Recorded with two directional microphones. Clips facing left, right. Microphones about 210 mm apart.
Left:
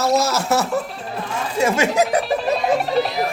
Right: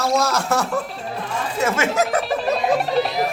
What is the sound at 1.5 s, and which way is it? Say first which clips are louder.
Speech: left 3 dB; 30° left (ahead or behind).